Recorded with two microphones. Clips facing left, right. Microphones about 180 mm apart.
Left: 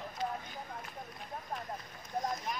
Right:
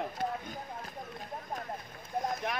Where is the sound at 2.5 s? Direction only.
80° right.